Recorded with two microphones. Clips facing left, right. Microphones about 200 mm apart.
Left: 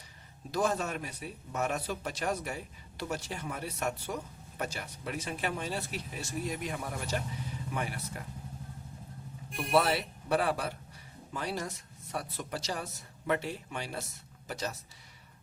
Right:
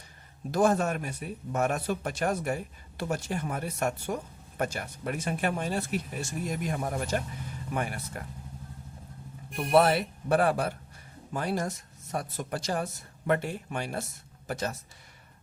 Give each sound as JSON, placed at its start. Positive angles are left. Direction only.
{"t": 0.5, "sound": "speech", "side_deg": -50}
{"t": 9.7, "sound": "speech", "side_deg": -50}